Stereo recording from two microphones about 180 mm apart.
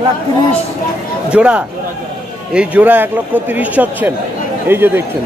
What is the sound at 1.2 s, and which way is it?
A man's voice, 5° right (ahead or behind).